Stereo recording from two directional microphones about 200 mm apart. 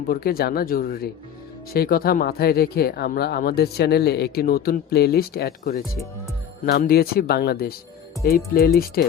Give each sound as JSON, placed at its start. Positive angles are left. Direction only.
{"t": 0.1, "sound": "speech", "side_deg": 50}